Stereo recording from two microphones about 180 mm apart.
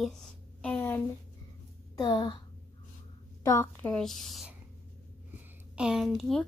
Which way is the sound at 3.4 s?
15° left (ahead or behind).